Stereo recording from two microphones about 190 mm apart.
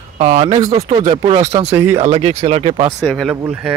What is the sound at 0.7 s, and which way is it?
Speech, 20° right (ahead or behind).